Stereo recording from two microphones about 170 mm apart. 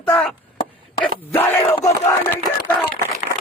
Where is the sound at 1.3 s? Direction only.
10° left (ahead or behind).